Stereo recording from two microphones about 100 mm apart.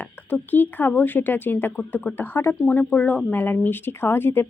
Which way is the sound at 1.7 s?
10° left (ahead or behind).